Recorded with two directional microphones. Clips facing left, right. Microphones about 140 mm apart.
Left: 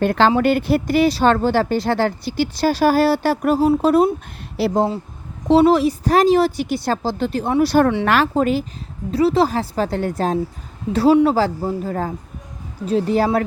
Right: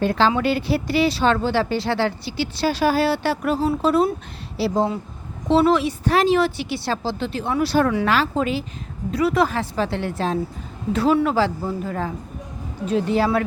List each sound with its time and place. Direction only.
0.0 s speech: 55° left (ahead or behind)
4.5 s speech: 55° left (ahead or behind)
5.5 s speech: 40° left (ahead or behind)
8.0 s speech: 55° left (ahead or behind)
9.1 s a woman's voice: 30° left (ahead or behind)